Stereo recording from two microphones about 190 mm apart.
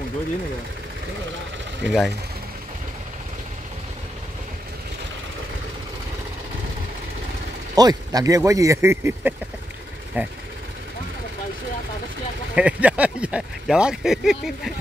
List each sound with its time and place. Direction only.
1.9 s speech: centre (ahead or behind)
7.7 s speech: 20° right (ahead or behind)
12.5 s speech: 5° right (ahead or behind)